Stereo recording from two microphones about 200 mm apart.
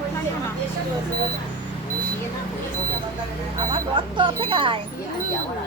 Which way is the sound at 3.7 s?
25° right (ahead or behind).